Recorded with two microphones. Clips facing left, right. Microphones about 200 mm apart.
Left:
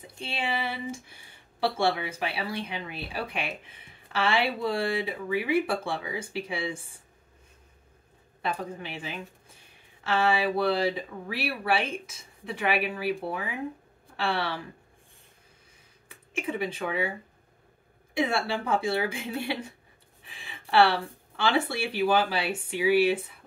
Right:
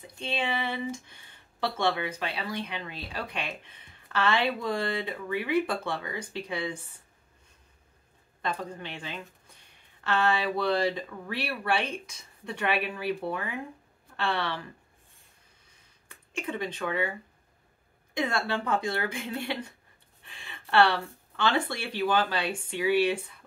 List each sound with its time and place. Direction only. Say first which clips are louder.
0.2 s speech: right 1 dB; 10° left (ahead or behind)
8.4 s speech: left 1 dB; 5° left (ahead or behind)
16.1 s speech: left 2 dB; 5° left (ahead or behind)
18.1 s speech: left 2 dB; 10° left (ahead or behind)